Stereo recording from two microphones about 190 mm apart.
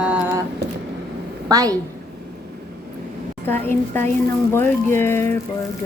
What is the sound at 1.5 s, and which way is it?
Speech, 20° right (ahead or behind).